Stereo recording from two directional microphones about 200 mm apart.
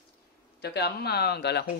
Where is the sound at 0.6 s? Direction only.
55° left (ahead or behind).